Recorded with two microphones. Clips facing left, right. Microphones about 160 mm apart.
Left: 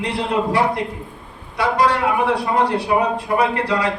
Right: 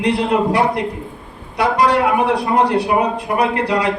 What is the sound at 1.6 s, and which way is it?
A man's voice, 15° right (ahead or behind).